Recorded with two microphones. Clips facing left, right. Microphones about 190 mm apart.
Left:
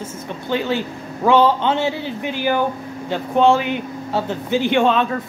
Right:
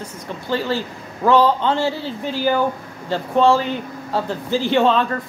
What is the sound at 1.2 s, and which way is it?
A woman's voice, 25° left (ahead or behind).